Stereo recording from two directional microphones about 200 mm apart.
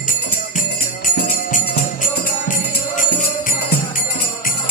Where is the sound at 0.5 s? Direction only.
40° left (ahead or behind).